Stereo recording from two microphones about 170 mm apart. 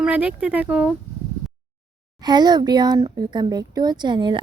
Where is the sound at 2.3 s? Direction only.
25° right (ahead or behind).